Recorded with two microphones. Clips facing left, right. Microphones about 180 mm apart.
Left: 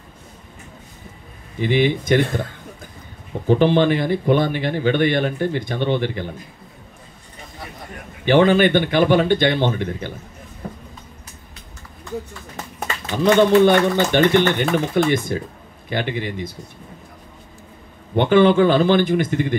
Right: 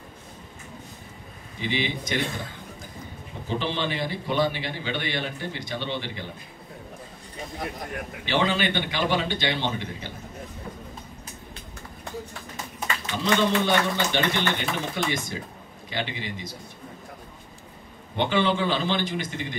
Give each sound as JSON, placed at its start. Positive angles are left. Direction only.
{"t": 1.6, "sound": "speech", "side_deg": 55}
{"t": 3.4, "sound": "a man's voice", "side_deg": 55}
{"t": 8.3, "sound": "a man's voice", "side_deg": 55}
{"t": 13.2, "sound": "a man's voice", "side_deg": 55}
{"t": 18.1, "sound": "a man's voice", "side_deg": 55}